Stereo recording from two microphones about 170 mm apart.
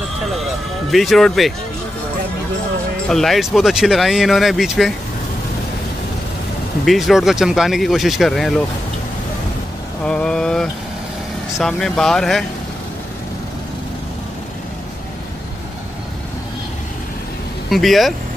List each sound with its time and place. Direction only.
0.2 s music: centre (ahead or behind)
3.1 s speech: centre (ahead or behind)
6.9 s speech: centre (ahead or behind)
10.0 s vehicle: 5° left (ahead or behind)
11.5 s speech: centre (ahead or behind)
17.6 s speech: centre (ahead or behind)